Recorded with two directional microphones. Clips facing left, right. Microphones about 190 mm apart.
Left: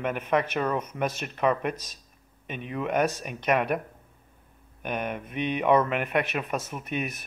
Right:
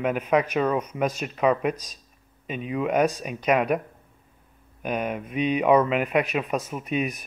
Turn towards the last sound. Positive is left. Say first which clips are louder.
# right 5 dB
turn(degrees=-15)  # may be behind; listen again after turning